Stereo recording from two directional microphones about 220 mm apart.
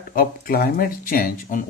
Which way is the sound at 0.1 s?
40° left (ahead or behind).